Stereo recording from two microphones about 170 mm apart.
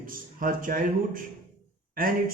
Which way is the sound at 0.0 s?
55° right (ahead or behind).